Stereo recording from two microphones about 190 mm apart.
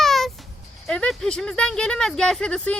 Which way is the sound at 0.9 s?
5° left (ahead or behind).